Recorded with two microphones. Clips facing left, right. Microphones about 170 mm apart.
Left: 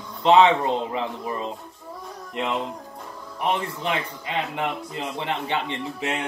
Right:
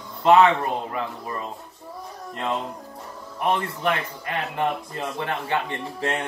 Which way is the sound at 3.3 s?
20° left (ahead or behind).